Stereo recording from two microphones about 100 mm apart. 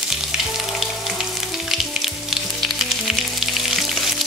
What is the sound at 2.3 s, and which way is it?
Frying, centre (ahead or behind).